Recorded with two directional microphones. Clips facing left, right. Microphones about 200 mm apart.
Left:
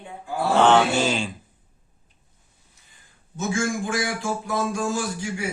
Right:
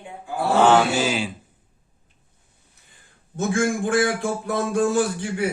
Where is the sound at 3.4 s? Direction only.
55° right (ahead or behind).